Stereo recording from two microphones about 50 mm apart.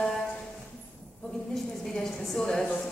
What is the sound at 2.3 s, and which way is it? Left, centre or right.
Speech, centre.